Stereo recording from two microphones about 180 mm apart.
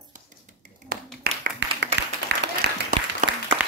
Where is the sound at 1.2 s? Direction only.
55° right (ahead or behind).